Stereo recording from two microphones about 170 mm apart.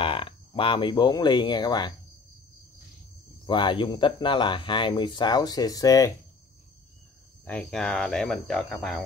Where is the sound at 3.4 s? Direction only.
30° left (ahead or behind).